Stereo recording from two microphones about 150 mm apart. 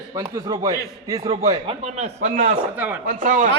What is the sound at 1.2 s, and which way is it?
A man's voice, 40° right (ahead or behind).